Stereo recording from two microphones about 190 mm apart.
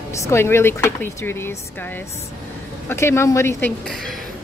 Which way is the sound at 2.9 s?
15° left (ahead or behind).